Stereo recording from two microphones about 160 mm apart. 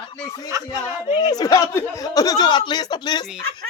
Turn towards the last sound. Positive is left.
turn(degrees=25)  # may be behind; listen again after turning